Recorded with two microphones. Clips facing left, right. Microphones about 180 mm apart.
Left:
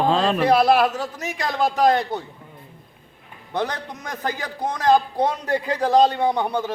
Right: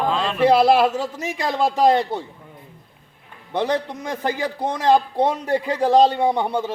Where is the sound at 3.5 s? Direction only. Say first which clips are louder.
Right 4 dB; 25° right (ahead or behind).